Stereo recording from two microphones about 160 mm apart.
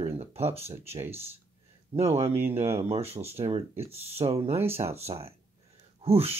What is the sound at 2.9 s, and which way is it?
Speech, 40° right (ahead or behind).